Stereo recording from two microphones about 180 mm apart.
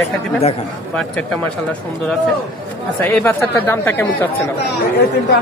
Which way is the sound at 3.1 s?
10° left (ahead or behind).